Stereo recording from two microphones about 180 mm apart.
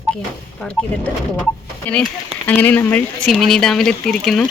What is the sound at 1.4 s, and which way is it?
Speech, 5° left (ahead or behind).